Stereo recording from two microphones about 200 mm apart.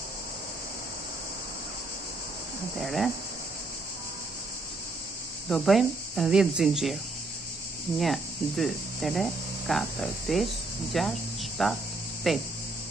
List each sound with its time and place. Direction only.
2.8 s speech: centre (ahead or behind)
5.5 s speech: centre (ahead or behind)
8.0 s speech: centre (ahead or behind)